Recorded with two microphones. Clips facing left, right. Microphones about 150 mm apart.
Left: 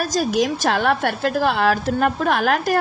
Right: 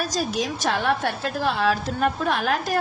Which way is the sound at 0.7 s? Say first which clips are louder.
Left 4 dB; 65° left (ahead or behind).